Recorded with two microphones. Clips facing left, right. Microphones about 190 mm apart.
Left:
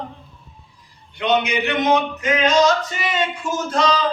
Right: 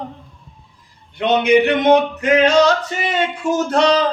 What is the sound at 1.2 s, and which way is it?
A man's voice, 55° right (ahead or behind).